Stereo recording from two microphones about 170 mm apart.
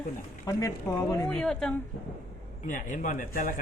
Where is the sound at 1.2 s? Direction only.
5° left (ahead or behind).